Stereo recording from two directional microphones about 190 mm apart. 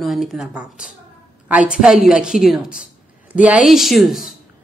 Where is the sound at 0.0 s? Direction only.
Centre (ahead or behind).